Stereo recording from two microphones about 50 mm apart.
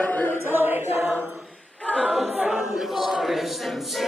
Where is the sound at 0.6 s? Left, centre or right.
Right.